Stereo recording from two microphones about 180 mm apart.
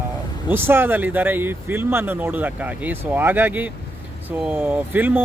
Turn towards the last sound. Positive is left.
turn(degrees=-10)  # may be behind; listen again after turning